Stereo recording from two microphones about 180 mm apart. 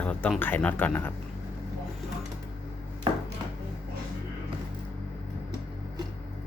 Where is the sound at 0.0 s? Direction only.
5° left (ahead or behind).